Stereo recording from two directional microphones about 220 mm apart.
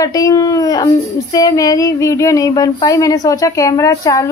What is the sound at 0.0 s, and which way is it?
Speech, 15° left (ahead or behind).